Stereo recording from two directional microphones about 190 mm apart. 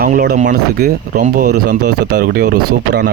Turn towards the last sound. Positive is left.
turn(degrees=-50)  # may be behind; listen again after turning